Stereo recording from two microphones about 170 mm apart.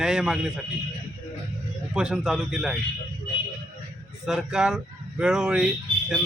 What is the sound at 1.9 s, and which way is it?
Speech, 5° right (ahead or behind).